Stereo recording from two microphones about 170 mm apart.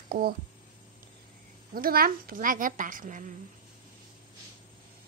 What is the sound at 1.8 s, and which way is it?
A woman's voice, 60° right (ahead or behind).